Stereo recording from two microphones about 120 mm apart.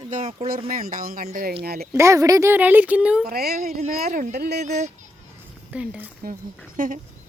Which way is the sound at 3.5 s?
80° right.